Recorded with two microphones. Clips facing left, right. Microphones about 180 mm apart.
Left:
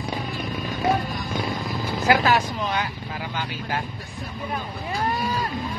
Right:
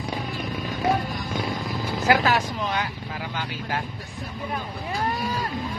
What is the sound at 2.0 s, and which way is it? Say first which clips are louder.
Speech: left 1 dB; 15° left (ahead or behind).